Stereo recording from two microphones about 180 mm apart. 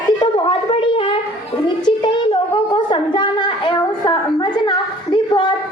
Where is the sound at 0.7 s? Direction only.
30° left (ahead or behind).